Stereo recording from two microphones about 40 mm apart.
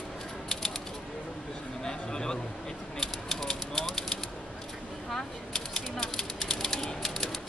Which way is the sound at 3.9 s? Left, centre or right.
Centre.